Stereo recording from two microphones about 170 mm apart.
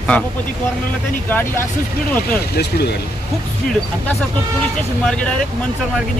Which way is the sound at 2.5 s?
70° left (ahead or behind).